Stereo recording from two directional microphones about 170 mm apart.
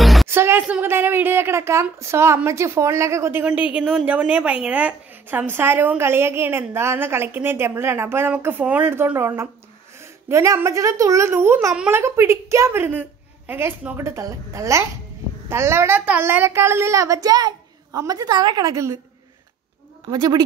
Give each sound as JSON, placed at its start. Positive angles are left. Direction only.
{"t": 0.0, "sound": "music", "side_deg": 0}
{"t": 0.3, "sound": "a woman's voice", "side_deg": -15}
{"t": 20.1, "sound": "a woman's voice", "side_deg": -20}